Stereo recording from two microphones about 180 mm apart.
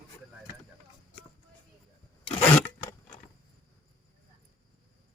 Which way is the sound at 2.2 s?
35° left (ahead or behind).